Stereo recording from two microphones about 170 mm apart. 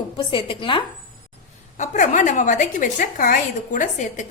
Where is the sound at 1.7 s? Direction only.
45° left (ahead or behind).